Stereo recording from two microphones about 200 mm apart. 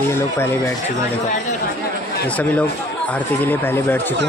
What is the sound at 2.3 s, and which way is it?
Speech, 5° left (ahead or behind).